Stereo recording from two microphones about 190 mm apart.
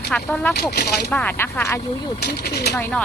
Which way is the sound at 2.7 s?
10° left (ahead or behind).